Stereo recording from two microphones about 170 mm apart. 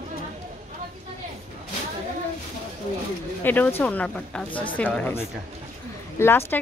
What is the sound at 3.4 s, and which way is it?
Speech, 10° left (ahead or behind).